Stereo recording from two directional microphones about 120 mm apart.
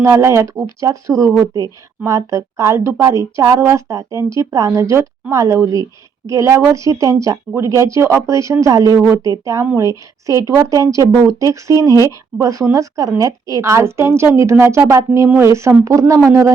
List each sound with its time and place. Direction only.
0.0 s a woman's voice: 25° right (ahead or behind)